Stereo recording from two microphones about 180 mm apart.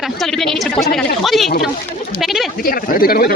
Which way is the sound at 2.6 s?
55° left (ahead or behind).